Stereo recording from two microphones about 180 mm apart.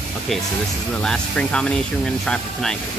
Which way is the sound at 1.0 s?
5° left (ahead or behind).